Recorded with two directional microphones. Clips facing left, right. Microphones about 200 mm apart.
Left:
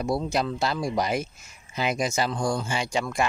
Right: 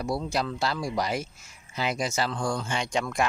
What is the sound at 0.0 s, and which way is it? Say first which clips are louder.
Speech: left 3 dB; 20° left (ahead or behind).